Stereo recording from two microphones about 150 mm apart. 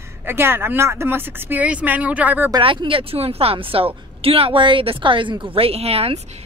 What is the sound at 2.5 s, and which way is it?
Speech, 30° right (ahead or behind).